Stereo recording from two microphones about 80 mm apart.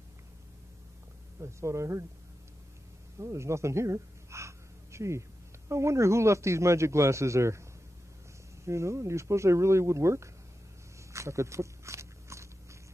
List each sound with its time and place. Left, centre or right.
1.4 s a man's voice: right
3.2 s a sound: right
5.7 s a man's voice: right
8.6 s a man's voice: right
11.1 s biting: right